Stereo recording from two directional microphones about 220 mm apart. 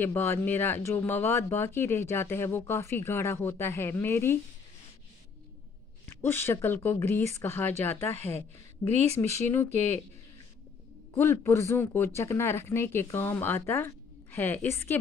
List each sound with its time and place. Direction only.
0.0 s speech: 10° left (ahead or behind)
6.0 s speech: 10° left (ahead or behind)
11.1 s speech: 10° left (ahead or behind)